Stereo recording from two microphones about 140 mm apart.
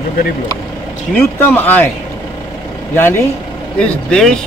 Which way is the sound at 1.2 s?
15° left (ahead or behind).